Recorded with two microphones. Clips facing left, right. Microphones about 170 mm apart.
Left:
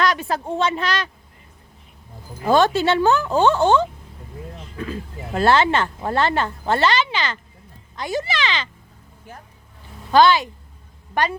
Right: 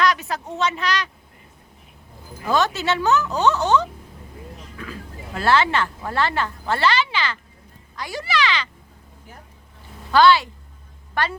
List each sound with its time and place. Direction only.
0.0 s a sound: 30° left (ahead or behind)
0.5 s speech: 30° left (ahead or behind)
2.4 s speech: 30° left (ahead or behind)
10.1 s speech: 20° left (ahead or behind)